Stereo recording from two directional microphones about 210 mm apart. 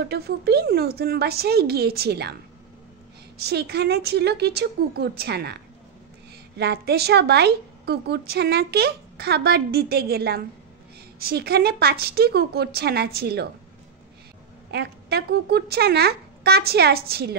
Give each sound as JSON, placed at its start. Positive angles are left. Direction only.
{"t": 0.1, "sound": "a woman's voice", "side_deg": -50}
{"t": 3.3, "sound": "a woman's voice", "side_deg": -50}
{"t": 6.6, "sound": "a woman's voice", "side_deg": -50}
{"t": 14.7, "sound": "a woman's voice", "side_deg": -50}